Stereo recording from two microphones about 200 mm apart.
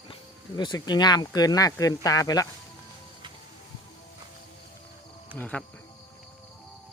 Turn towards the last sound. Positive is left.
turn(degrees=10)  # may be behind; listen again after turning